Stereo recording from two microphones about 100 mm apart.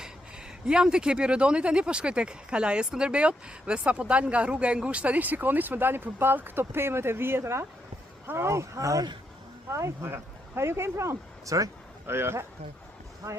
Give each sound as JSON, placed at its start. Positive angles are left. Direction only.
{"t": 0.6, "sound": "speech", "side_deg": -10}